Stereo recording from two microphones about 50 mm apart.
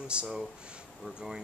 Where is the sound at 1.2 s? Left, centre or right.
Centre.